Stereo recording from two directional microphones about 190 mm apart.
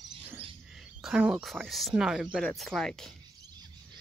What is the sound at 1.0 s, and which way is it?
Speech, 5° right (ahead or behind).